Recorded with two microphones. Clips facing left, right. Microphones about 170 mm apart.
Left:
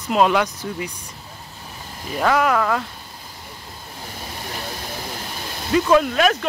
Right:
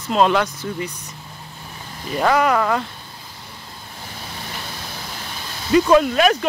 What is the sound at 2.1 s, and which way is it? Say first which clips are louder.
Speech: right 1 dB; centre (ahead or behind).